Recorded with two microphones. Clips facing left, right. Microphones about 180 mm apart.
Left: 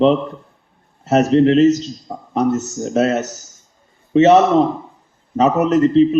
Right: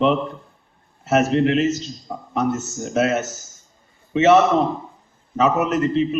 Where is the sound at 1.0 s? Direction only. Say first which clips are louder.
Left 5 dB; 35° left (ahead or behind).